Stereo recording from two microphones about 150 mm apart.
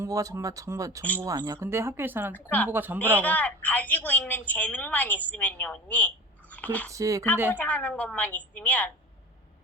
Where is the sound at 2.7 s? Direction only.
10° right (ahead or behind).